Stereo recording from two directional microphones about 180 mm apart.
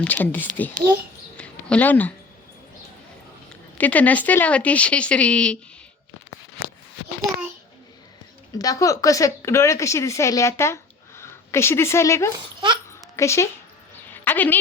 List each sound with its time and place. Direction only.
0.0 s speech: 10° left (ahead or behind)
1.4 s a sound: 10° left (ahead or behind)
3.8 s speech: 10° left (ahead or behind)
8.5 s a woman's voice: 20° left (ahead or behind)
12.5 s speech: 25° right (ahead or behind)
13.1 s speech: 15° left (ahead or behind)